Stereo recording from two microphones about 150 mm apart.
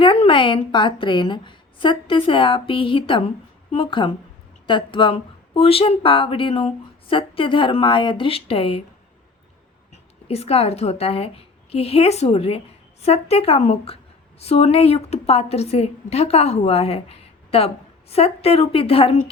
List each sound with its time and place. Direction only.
0.0 s speech: 35° left (ahead or behind)
9.9 s a woman's voice: 45° left (ahead or behind)